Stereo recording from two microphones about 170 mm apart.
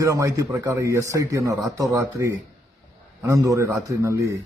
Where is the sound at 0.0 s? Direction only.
20° right (ahead or behind).